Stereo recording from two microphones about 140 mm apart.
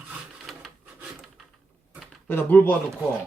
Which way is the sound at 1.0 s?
Centre (ahead or behind).